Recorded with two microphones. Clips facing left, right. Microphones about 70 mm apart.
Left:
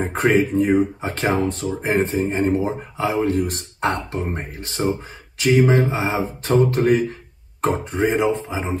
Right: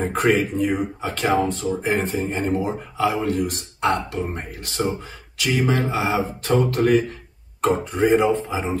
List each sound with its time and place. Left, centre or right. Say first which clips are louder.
0.0 s speech: left 1 dB; left